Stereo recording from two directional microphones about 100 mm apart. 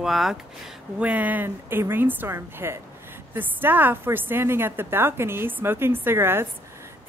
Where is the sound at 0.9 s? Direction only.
15° right (ahead or behind).